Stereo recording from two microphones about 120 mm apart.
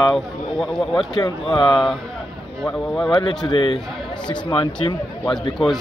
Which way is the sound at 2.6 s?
5° left (ahead or behind).